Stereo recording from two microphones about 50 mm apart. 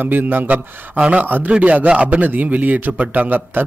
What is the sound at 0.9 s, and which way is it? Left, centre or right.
A man's voice, right.